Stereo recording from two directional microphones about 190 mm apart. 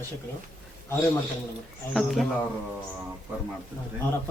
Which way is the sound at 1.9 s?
Centre (ahead or behind).